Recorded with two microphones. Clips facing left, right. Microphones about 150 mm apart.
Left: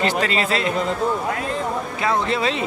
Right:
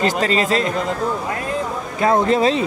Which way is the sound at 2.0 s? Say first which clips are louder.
Right 7 dB; 45° right (ahead or behind).